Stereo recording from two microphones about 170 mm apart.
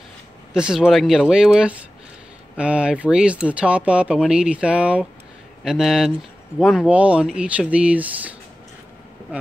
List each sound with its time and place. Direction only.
0.5 s speech: 5° right (ahead or behind)